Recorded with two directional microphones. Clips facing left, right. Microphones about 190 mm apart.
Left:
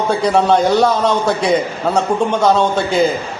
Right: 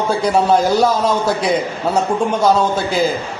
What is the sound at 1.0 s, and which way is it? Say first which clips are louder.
A man's voice: left 1 dB; 5° right (ahead or behind).